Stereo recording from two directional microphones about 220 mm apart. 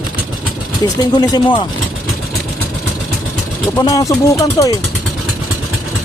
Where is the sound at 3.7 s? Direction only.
15° left (ahead or behind).